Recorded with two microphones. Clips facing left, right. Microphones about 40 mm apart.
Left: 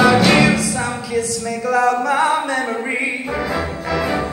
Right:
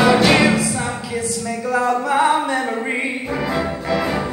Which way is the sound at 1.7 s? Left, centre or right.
Centre.